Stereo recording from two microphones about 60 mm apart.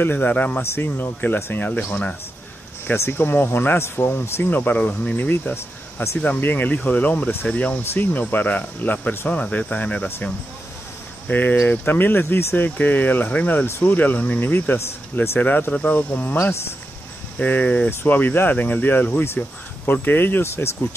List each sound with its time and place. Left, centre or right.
0.0 s speech: left
0.6 s speech: left
2.9 s speech: left
7.8 s speech: left
11.2 s speech: left
15.7 s speech: left
16.3 s speech: left
17.4 s speech: left